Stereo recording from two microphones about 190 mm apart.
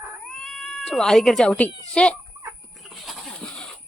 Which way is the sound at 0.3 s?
5° left (ahead or behind).